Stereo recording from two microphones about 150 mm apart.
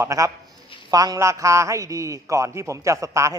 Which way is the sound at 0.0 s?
20° right (ahead or behind).